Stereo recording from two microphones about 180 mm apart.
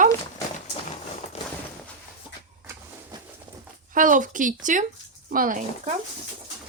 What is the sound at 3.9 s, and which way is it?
Speech, 45° right (ahead or behind).